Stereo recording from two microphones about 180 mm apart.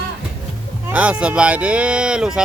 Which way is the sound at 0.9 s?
5° right (ahead or behind).